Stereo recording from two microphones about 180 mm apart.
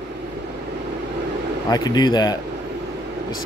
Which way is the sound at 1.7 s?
20° left (ahead or behind).